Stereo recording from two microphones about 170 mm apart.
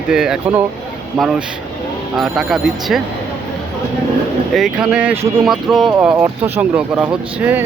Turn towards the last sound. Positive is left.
turn(degrees=-10)  # may be behind; listen again after turning